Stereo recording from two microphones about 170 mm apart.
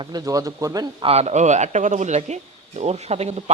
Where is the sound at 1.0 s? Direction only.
40° right (ahead or behind).